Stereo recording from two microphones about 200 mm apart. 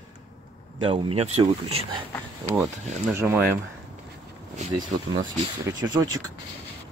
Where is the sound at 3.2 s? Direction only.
10° right (ahead or behind).